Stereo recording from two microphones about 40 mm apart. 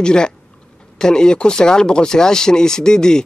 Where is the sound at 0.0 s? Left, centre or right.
Left.